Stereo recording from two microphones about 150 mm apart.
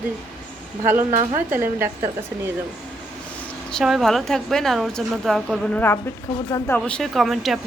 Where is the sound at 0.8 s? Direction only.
15° right (ahead or behind).